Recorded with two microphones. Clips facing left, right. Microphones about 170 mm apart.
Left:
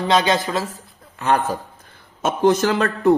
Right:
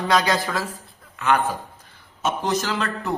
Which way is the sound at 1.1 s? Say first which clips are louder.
Left 2 dB; 35° left (ahead or behind).